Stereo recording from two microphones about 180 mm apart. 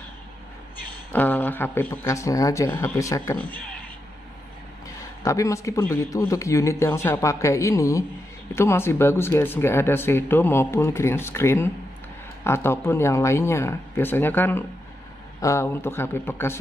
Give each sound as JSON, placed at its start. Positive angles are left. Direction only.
{"t": 1.1, "sound": "speech", "side_deg": 10}
{"t": 5.2, "sound": "speech", "side_deg": 15}